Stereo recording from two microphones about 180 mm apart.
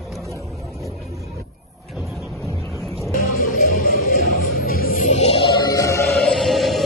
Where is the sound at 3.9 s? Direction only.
60° left (ahead or behind).